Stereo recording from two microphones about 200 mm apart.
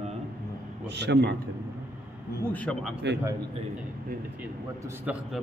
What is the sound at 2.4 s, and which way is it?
Speech, 5° left (ahead or behind).